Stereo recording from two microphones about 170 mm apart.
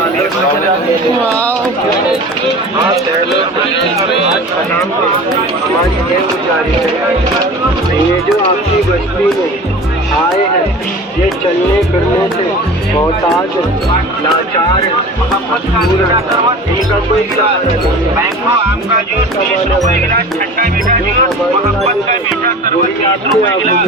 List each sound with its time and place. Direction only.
20.1 s speech: 55° right (ahead or behind)